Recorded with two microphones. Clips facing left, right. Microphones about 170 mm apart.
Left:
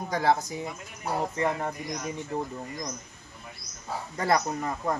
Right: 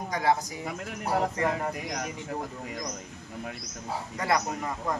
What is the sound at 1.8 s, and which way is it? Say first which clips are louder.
Speech: right 1 dB; 90° right.